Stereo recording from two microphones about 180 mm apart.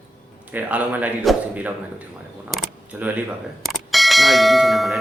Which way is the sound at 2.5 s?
Centre (ahead or behind).